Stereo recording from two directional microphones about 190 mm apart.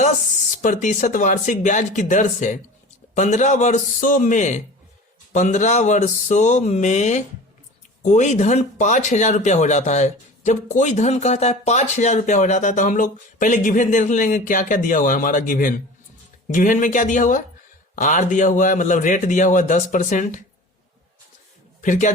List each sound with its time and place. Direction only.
0.6 s speech: 40° left (ahead or behind)
21.8 s a man's voice: 40° left (ahead or behind)